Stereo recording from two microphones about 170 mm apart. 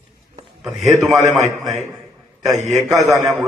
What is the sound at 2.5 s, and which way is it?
Speech, 45° right (ahead or behind).